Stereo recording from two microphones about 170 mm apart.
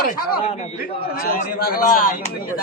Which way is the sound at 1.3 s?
60° left (ahead or behind).